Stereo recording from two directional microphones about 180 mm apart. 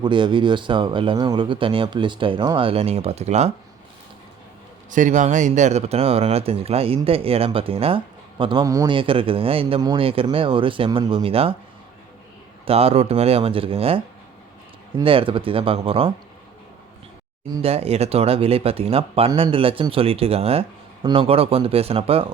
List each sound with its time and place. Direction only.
0.0 s speech: 25° right (ahead or behind)
4.9 s speech: 45° right (ahead or behind)
12.6 s speech: 35° right (ahead or behind)
17.6 s speech: 35° right (ahead or behind)